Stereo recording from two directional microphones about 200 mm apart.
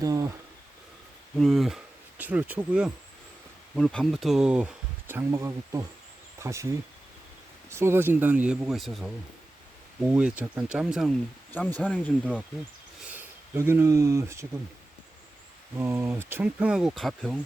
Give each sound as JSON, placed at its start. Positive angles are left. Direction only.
{"t": 0.0, "sound": "speech", "side_deg": -15}
{"t": 1.4, "sound": "speech", "side_deg": 0}
{"t": 11.5, "sound": "speech", "side_deg": 10}
{"t": 12.2, "sound": "speech", "side_deg": -5}
{"t": 15.8, "sound": "speech", "side_deg": -10}